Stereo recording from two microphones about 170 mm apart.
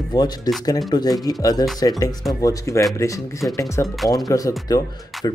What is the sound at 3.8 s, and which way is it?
Speech, centre (ahead or behind).